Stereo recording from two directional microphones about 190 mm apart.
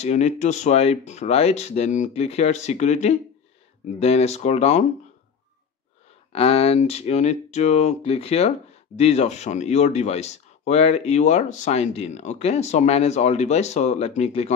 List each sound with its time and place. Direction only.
0.0 s speech: 35° left (ahead or behind)
6.3 s speech: 30° left (ahead or behind)